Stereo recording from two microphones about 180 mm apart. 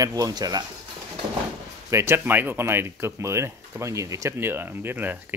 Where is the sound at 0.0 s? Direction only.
20° right (ahead or behind).